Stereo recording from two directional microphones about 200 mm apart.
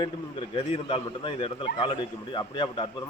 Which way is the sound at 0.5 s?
30° left (ahead or behind).